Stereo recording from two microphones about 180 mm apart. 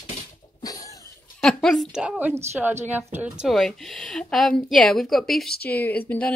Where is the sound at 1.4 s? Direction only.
Centre (ahead or behind).